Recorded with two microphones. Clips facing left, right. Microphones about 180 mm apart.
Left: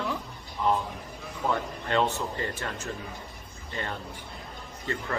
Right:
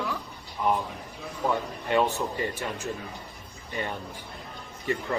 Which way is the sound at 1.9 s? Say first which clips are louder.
Right 2 dB; 15° right (ahead or behind).